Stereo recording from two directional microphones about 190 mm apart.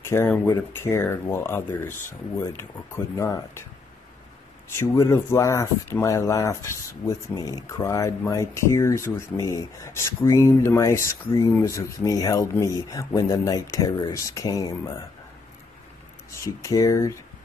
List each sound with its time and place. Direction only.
0.0 s speech: 15° left (ahead or behind)
4.7 s speech: 15° left (ahead or behind)
16.3 s speech: 15° left (ahead or behind)